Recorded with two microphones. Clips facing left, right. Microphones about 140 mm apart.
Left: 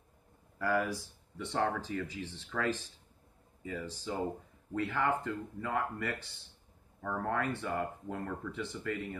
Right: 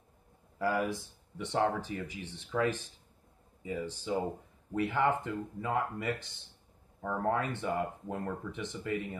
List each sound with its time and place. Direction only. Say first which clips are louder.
0.6 s speech: right 1 dB; 20° right (ahead or behind)